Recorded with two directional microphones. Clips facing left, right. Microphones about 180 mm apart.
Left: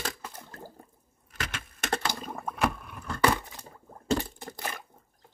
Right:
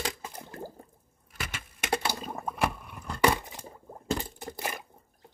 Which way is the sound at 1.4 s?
10° right (ahead or behind).